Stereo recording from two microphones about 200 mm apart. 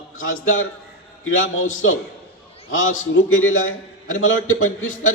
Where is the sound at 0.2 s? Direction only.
80° left.